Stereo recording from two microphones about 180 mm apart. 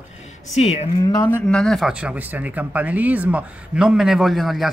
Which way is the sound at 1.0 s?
15° left (ahead or behind).